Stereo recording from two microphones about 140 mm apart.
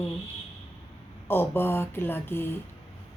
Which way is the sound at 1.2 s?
15° left (ahead or behind).